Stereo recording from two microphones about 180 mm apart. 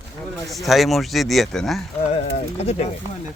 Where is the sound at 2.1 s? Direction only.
35° left (ahead or behind).